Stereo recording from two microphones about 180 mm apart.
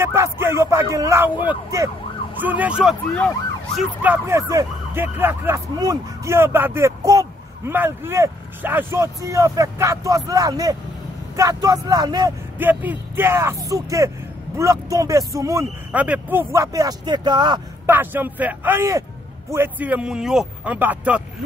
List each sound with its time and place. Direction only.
0.0 s speech: 15° right (ahead or behind)
12.5 s speech: 10° right (ahead or behind)
17.8 s speech: 10° right (ahead or behind)